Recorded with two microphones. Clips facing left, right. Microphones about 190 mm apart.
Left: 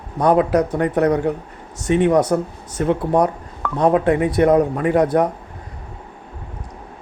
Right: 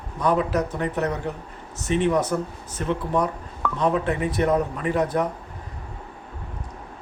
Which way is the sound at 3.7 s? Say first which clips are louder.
Left 8 dB; 65° left (ahead or behind).